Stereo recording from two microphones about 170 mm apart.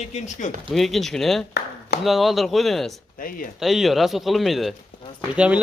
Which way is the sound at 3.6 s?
Centre (ahead or behind).